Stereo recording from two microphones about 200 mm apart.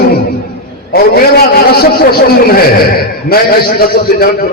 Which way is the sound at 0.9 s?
50° left (ahead or behind).